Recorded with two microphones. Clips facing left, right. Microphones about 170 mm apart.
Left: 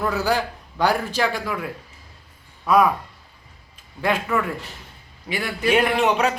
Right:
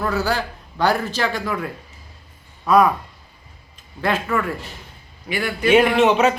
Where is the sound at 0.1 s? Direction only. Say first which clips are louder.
Even; 15° left (ahead or behind).